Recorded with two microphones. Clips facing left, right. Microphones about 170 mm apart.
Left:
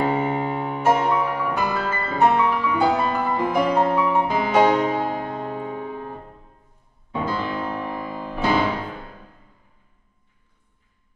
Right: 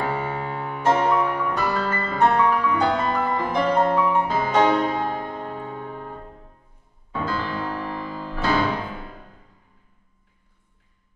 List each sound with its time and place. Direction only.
0.1 s music: 20° left (ahead or behind)